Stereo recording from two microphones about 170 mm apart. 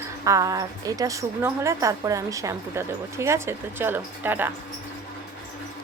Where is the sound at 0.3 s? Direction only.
20° right (ahead or behind).